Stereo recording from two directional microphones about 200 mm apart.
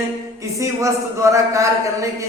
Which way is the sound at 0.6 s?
15° right (ahead or behind).